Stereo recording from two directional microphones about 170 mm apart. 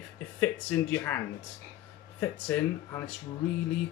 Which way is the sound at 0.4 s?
10° left (ahead or behind).